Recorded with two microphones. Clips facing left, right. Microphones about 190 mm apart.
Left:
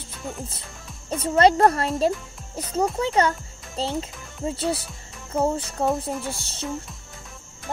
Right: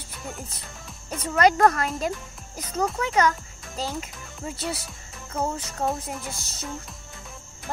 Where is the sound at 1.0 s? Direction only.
30° left (ahead or behind).